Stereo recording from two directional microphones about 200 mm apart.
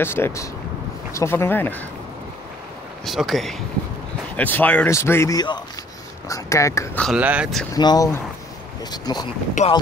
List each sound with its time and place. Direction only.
0.0 s speech: 10° left (ahead or behind)
3.1 s speech: centre (ahead or behind)
7.1 s speech: 5° right (ahead or behind)
7.7 s speech: 20° left (ahead or behind)
9.6 s speech: 40° left (ahead or behind)